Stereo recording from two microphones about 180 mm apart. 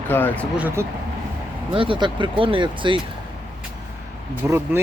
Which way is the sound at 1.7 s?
30° right (ahead or behind).